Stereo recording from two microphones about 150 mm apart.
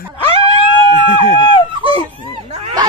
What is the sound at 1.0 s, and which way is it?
Run, 50° left (ahead or behind).